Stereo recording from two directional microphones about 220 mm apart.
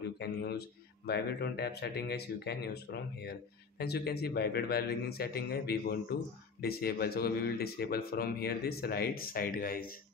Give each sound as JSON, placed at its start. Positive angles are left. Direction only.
{"t": 0.2, "sound": "a man's voice", "side_deg": 45}